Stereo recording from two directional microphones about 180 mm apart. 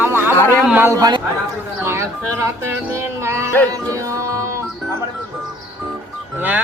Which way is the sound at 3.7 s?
20° right (ahead or behind).